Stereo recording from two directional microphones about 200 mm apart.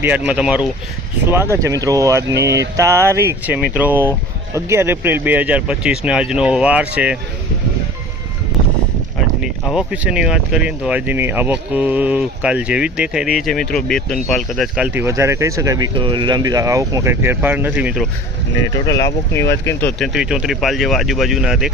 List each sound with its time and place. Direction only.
0.3 s speech: 5° right (ahead or behind)
9.4 s speech: 5° right (ahead or behind)
18.9 s speech: 15° left (ahead or behind)
20.0 s speech: 5° right (ahead or behind)